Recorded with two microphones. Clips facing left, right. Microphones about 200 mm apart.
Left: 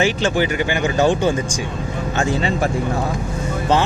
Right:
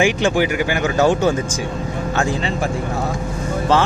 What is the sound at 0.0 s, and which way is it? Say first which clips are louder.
Speech: right 2 dB; 10° right (ahead or behind).